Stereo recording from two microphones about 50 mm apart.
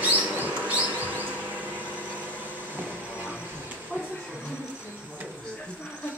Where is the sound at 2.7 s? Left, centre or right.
Right.